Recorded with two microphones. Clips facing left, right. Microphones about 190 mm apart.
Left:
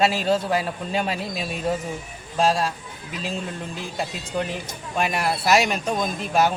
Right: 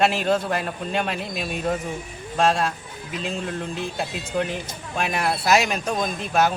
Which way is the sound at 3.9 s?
Centre (ahead or behind).